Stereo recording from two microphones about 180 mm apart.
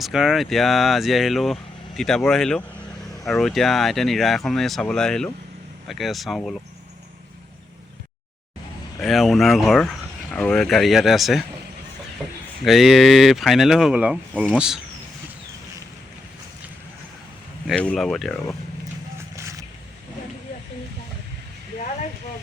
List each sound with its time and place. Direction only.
0.0 s speech: centre (ahead or behind)
9.0 s speech: centre (ahead or behind)
12.6 s speech: centre (ahead or behind)
17.7 s speech: 5° left (ahead or behind)
19.4 s a sound: 15° right (ahead or behind)